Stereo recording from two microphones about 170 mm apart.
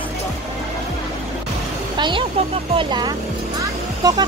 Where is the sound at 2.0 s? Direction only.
30° right (ahead or behind).